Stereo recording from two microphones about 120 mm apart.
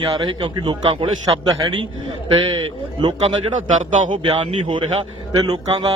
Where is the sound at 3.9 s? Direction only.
90° right.